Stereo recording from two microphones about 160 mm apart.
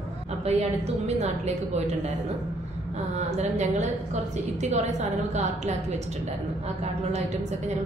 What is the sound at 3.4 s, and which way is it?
A woman's voice, 45° right (ahead or behind).